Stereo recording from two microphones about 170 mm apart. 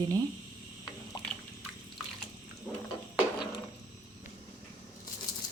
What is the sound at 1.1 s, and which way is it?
Drip, 30° left (ahead or behind).